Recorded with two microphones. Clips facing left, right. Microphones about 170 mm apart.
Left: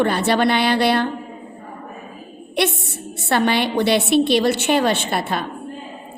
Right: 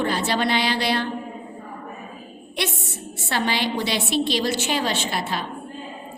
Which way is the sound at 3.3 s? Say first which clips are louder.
Left 6 dB; 55° left (ahead or behind).